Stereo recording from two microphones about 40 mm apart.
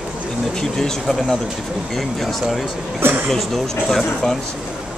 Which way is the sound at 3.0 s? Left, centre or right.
Right.